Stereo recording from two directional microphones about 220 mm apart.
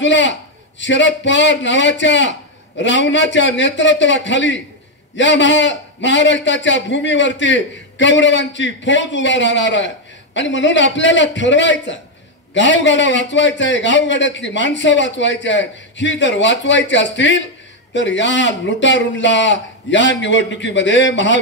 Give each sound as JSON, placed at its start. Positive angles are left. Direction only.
{"t": 0.0, "sound": "a man's voice", "side_deg": 55}